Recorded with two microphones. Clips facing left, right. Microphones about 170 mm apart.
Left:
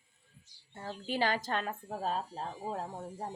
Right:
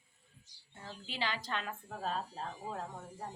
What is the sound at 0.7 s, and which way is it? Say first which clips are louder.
A woman's voice: left 9 dB; 50° left (ahead or behind).